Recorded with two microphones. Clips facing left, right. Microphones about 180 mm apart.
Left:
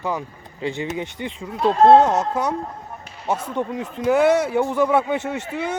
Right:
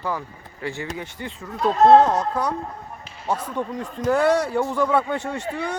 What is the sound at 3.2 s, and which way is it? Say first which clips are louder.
Speech: left 2 dB; 20° left (ahead or behind).